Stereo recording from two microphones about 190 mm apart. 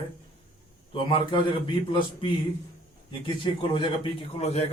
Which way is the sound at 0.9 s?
25° left (ahead or behind).